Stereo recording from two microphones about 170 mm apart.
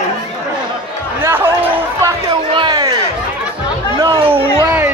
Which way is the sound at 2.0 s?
30° right (ahead or behind).